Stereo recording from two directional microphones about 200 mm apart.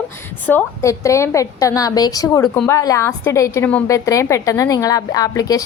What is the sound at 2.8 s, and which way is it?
A woman's voice, 15° left (ahead or behind).